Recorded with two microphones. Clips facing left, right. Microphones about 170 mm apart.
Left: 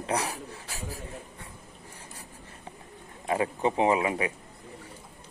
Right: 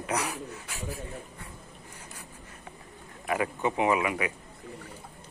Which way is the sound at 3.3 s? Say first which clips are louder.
Left 2 dB; 30° left (ahead or behind).